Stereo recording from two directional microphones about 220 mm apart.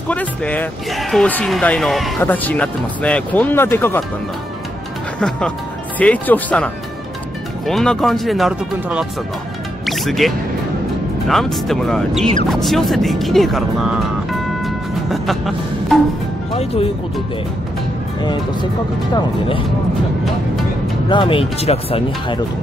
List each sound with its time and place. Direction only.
0.1 s speech: 5° left (ahead or behind)
5.9 s speech: 5° left (ahead or behind)
9.8 s music: centre (ahead or behind)
11.2 s speech: centre (ahead or behind)
16.5 s speech: 25° left (ahead or behind)
21.1 s speech: 25° left (ahead or behind)